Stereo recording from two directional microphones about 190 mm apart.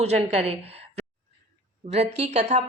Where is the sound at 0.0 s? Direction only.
35° right (ahead or behind).